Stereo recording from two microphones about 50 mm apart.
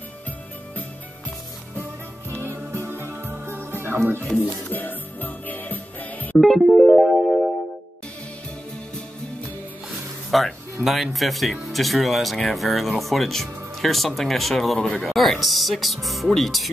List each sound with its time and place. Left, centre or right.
2.4 s music: right
4.4 s music: left
6.6 s music: centre
10.3 s speech: centre